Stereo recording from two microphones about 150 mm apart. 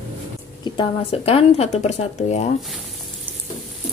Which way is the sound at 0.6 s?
35° left (ahead or behind).